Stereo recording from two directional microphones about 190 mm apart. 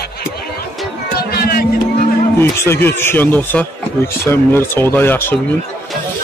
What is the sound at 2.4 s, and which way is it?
Speech, 10° left (ahead or behind).